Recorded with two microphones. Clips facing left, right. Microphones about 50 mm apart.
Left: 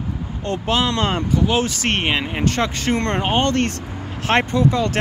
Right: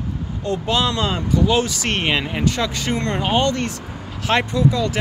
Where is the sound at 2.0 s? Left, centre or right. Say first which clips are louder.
Even; centre.